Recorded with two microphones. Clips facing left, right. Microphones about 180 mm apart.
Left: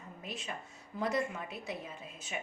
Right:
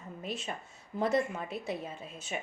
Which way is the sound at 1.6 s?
30° right (ahead or behind).